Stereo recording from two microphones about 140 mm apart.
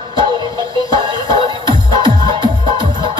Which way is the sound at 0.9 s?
35° right (ahead or behind).